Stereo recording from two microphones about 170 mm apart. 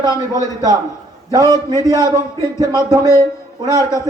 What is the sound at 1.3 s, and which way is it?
A man's voice, 20° right (ahead or behind).